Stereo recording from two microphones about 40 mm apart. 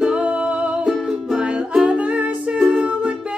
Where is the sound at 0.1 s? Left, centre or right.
Right.